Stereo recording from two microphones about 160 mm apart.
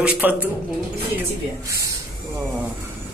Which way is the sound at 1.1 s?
20° right (ahead or behind).